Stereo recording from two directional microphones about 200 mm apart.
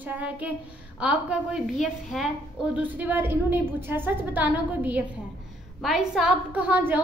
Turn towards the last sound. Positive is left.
turn(degrees=-5)  # may be behind; listen again after turning